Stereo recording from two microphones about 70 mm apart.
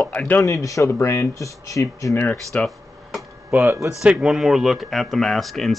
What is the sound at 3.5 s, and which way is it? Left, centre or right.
Speech, right.